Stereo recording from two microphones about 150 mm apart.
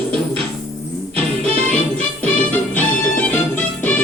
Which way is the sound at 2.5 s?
10° left (ahead or behind).